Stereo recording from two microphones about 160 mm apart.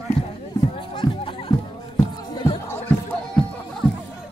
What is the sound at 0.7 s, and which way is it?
Music, 30° left (ahead or behind).